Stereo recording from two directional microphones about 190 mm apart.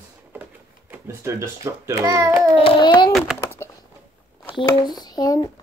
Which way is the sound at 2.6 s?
25° left (ahead or behind).